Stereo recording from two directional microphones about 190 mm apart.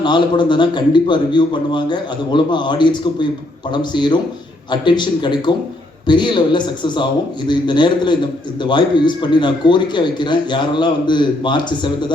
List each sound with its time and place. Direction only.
0.0 s a man's voice: 25° left (ahead or behind)